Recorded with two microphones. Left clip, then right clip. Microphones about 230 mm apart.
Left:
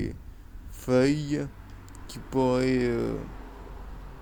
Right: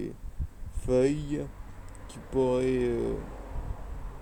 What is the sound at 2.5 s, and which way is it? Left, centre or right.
Speech, left.